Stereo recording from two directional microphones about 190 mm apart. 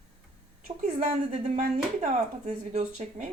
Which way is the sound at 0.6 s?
40° right (ahead or behind).